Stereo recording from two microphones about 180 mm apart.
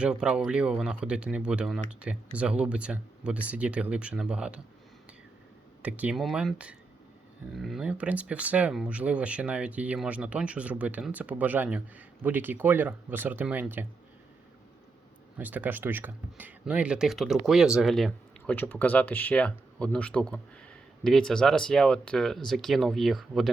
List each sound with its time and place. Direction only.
0.0 s speech: 5° right (ahead or behind)
5.8 s speech: 5° right (ahead or behind)
15.4 s speech: 10° right (ahead or behind)